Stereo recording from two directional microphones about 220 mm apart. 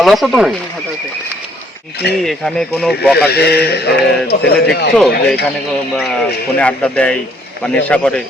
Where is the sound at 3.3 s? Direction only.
45° left (ahead or behind).